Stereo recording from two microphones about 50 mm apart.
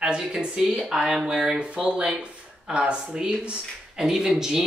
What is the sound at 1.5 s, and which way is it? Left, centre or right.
A woman's voice, right.